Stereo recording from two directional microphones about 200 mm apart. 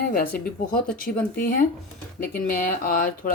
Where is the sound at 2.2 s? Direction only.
45° left (ahead or behind).